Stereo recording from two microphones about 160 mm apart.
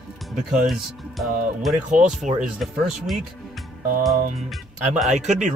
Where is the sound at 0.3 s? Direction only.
Centre (ahead or behind).